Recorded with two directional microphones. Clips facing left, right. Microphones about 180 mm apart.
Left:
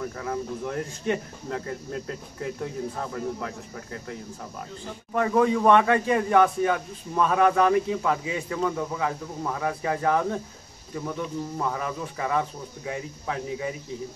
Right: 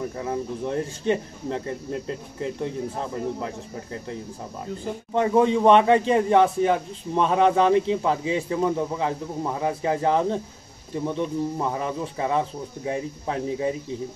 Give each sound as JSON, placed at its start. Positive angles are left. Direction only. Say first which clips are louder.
{"t": 0.0, "sound": "speech", "louder": "right 2 dB", "side_deg": -20}
{"t": 5.1, "sound": "speech", "louder": "right 2 dB", "side_deg": -25}